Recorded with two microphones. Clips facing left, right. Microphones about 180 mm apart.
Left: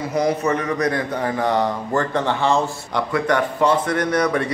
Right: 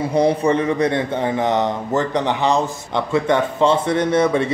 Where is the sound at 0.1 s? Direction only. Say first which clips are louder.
Right 3 dB; 30° right (ahead or behind).